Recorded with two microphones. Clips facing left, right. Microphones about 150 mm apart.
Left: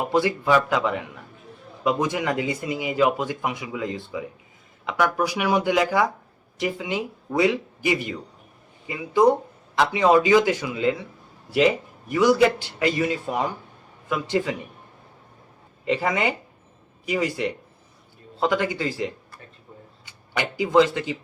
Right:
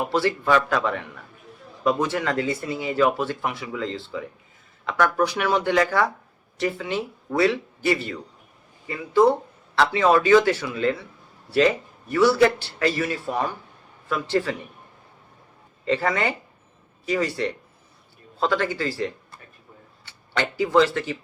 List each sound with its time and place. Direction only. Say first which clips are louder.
0.0 s speech: left 1 dB; 15° left (ahead or behind)
15.8 s speech: even; 15° left (ahead or behind)